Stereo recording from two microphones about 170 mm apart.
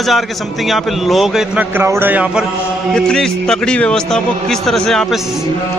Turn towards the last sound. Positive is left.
turn(degrees=0)  # may be behind; listen again after turning